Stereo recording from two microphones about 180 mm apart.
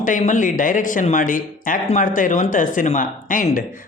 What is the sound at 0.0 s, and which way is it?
Speech, 45° left (ahead or behind).